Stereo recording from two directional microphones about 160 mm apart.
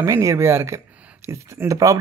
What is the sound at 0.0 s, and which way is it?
Speech, 20° right (ahead or behind).